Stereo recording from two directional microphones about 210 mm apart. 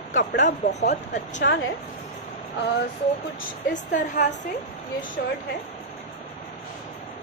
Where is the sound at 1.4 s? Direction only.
65° left (ahead or behind).